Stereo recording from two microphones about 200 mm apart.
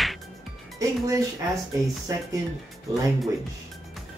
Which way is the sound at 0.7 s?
15° right (ahead or behind).